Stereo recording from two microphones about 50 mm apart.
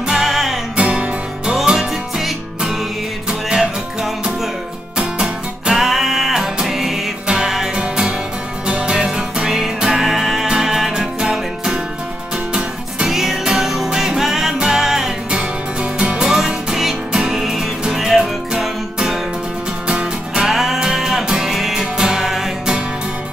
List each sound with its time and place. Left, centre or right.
0.1 s music: centre
0.7 s music: right
1.6 s music: centre
4.9 s music: centre
8.6 s music: right
15.8 s music: right
16.2 s music: centre
20.4 s music: centre